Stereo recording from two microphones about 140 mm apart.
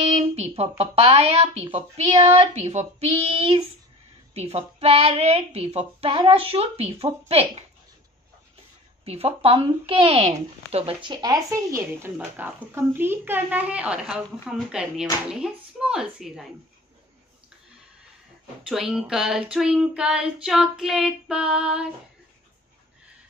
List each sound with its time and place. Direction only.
0.1 s speech: 50° right (ahead or behind)
9.0 s speech: 45° right (ahead or behind); by 15.0 s 5° right (ahead or behind)
15.3 s child singing: 5° right (ahead or behind)
18.7 s child singing: 5° right (ahead or behind)